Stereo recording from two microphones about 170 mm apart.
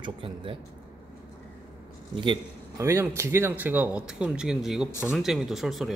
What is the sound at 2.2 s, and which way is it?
A man's voice, 25° right (ahead or behind).